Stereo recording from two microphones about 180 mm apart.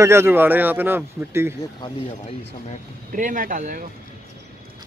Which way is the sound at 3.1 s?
45° right (ahead or behind).